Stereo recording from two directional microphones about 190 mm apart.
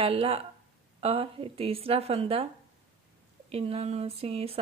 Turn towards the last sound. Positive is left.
turn(degrees=-30)  # may be behind; listen again after turning